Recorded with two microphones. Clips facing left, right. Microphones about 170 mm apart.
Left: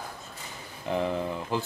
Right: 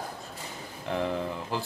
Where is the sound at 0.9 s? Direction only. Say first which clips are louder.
Left 2 dB; centre (ahead or behind).